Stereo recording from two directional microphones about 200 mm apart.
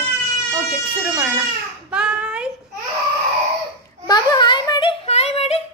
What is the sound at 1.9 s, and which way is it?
Child singing, 5° right (ahead or behind).